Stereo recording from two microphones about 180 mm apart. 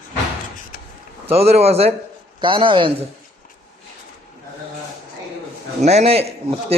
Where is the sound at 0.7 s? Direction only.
50° left (ahead or behind).